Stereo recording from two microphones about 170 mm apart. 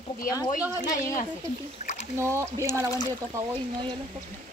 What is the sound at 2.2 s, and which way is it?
Speech, 15° right (ahead or behind).